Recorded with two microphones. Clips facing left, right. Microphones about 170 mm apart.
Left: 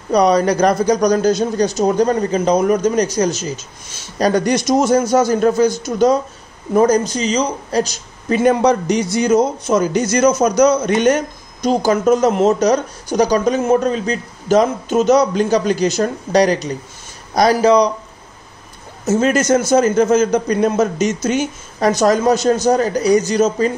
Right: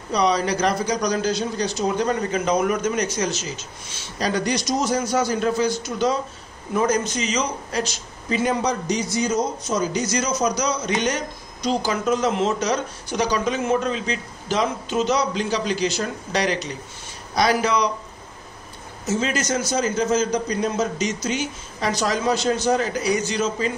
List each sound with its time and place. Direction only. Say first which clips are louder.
0.1 s a man's voice: left 7 dB; 45° left (ahead or behind)
8.3 s a man's voice: left 9 dB; 55° left (ahead or behind); by 17.8 s 35° left (ahead or behind)
19.0 s a man's voice: left 9 dB; 50° left (ahead or behind)